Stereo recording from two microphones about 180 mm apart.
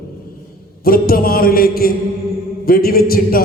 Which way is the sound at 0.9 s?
55° left (ahead or behind).